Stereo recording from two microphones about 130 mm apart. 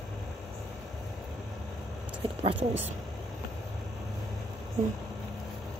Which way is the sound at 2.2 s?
40° right (ahead or behind).